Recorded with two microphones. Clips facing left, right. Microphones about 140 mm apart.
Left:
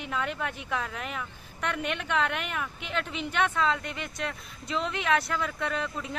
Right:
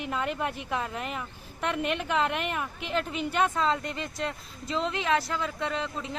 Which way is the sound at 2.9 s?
40° right (ahead or behind).